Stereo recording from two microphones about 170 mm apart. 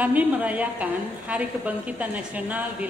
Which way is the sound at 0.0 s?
10° right (ahead or behind).